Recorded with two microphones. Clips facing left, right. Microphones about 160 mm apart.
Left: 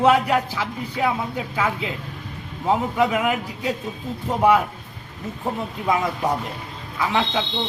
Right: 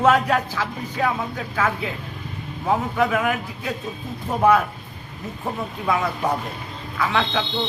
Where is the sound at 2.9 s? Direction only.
10° left (ahead or behind).